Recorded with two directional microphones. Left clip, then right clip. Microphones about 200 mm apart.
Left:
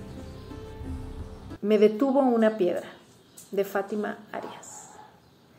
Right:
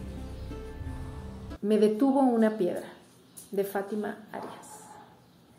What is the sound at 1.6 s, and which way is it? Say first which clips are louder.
Speech: left 3 dB; centre (ahead or behind).